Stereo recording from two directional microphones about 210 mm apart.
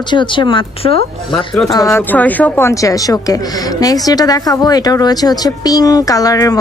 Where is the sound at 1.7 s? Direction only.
15° left (ahead or behind).